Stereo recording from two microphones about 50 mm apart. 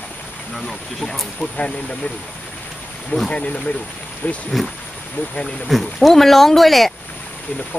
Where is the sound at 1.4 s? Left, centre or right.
Left.